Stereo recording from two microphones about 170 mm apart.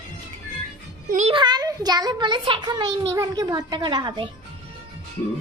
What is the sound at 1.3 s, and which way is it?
A child's voice, 25° right (ahead or behind).